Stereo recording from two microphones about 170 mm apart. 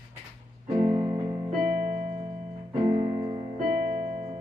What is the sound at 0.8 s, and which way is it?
Music, 20° right (ahead or behind).